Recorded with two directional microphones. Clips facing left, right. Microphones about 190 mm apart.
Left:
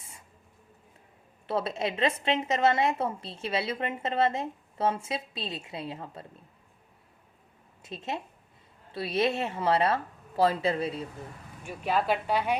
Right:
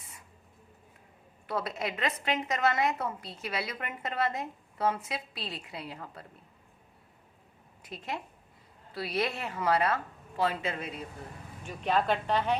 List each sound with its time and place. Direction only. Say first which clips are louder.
1.5 s a woman's voice: left 4 dB; 25° left (ahead or behind)
7.8 s a woman's voice: left 3 dB; 25° left (ahead or behind)
11.6 s speech: even; 5° left (ahead or behind)